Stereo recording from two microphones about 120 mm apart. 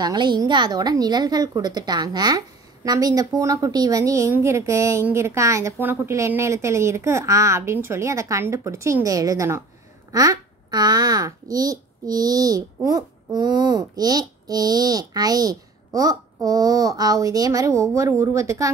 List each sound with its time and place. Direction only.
0.0 s a child's voice: 35° right (ahead or behind)